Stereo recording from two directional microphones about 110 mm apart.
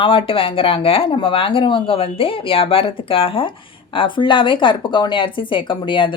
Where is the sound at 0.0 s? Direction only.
50° left (ahead or behind).